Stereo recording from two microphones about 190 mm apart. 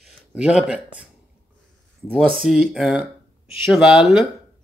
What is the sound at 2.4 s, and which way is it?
Speech, centre (ahead or behind).